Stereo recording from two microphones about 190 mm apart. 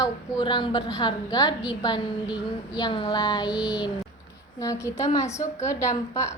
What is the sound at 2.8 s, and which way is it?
Speech, 25° left (ahead or behind).